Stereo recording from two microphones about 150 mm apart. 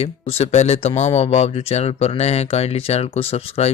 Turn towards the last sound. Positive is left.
turn(degrees=45)  # may be behind; listen again after turning